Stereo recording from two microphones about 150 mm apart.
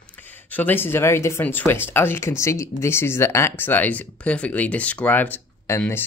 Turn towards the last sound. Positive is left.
turn(degrees=15)  # may be behind; listen again after turning